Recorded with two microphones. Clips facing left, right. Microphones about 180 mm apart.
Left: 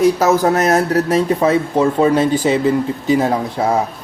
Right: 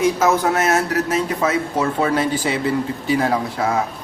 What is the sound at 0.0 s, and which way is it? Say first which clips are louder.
Speech: left 4 dB; 40° left (ahead or behind).